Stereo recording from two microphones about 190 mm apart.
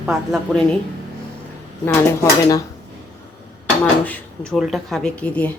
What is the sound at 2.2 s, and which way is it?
Speech, 15° left (ahead or behind).